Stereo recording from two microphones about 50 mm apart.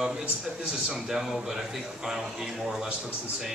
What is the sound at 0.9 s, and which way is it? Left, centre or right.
A man's voice, centre.